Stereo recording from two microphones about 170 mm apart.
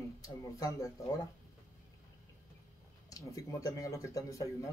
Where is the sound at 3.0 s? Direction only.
20° left (ahead or behind).